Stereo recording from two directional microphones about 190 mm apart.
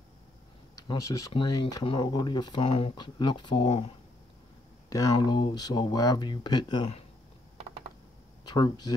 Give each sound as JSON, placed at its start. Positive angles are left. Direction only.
{"t": 0.7, "sound": "speech", "side_deg": 20}
{"t": 4.8, "sound": "a sound", "side_deg": 15}
{"t": 5.1, "sound": "speech", "side_deg": 25}
{"t": 8.5, "sound": "speech", "side_deg": 20}